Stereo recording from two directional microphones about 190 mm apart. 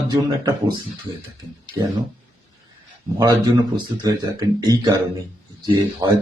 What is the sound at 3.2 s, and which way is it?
Speech, 20° right (ahead or behind).